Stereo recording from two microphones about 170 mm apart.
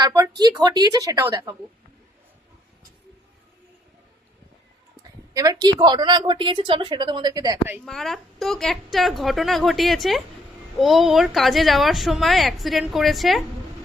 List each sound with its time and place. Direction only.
0.0 s a woman's voice: 20° right (ahead or behind)
5.3 s a woman's voice: 20° right (ahead or behind)
7.9 s speech: centre (ahead or behind)